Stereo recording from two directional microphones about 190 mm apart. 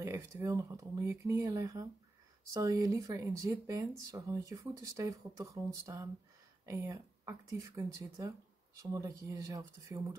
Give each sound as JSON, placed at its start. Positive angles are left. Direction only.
{"t": 0.0, "sound": "speech", "side_deg": -15}